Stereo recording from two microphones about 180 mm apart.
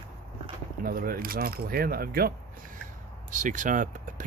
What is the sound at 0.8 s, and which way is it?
Speech, 55° right (ahead or behind).